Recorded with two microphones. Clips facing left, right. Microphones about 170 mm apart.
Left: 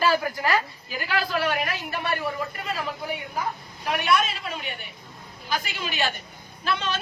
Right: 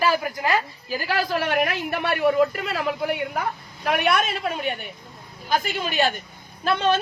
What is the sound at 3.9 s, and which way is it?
A woman's voice, 60° right (ahead or behind).